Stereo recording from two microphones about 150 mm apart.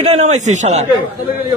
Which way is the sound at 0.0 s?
45° right (ahead or behind).